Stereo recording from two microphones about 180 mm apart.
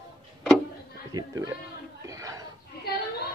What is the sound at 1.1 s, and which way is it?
Music, 20° right (ahead or behind).